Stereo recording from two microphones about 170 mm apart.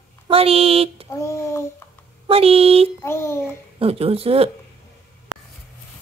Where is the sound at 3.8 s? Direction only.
35° right (ahead or behind).